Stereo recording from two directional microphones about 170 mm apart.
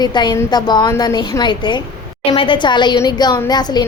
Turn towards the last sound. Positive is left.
turn(degrees=25)  # may be behind; listen again after turning